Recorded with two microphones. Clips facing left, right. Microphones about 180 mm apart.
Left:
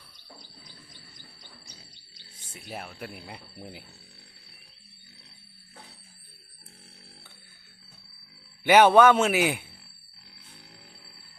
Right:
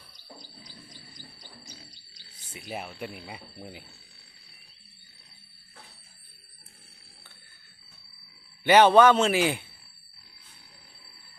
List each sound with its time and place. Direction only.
2.5 s a man's voice: 5° right (ahead or behind)
8.6 s a man's voice: 10° left (ahead or behind)